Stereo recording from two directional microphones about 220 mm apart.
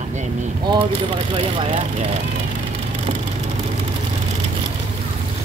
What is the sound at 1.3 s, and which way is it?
Speech, 25° right (ahead or behind).